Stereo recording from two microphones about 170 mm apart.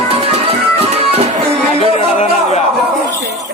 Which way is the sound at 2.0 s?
35° left (ahead or behind).